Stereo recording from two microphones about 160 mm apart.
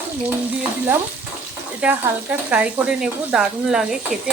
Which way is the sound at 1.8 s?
10° right (ahead or behind).